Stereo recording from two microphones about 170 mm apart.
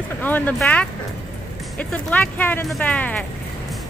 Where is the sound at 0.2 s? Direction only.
10° left (ahead or behind).